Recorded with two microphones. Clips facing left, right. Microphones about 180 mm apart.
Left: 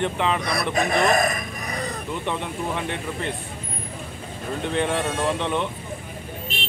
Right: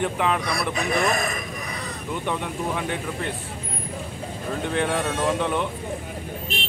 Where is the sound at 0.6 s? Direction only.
45° left (ahead or behind).